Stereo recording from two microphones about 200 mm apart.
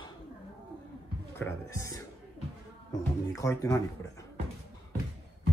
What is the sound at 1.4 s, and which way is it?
Speech, 15° left (ahead or behind).